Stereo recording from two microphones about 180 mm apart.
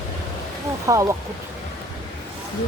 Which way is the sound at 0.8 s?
20° right (ahead or behind).